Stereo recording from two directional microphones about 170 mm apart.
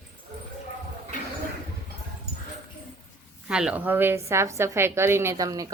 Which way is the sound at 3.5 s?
5° right (ahead or behind).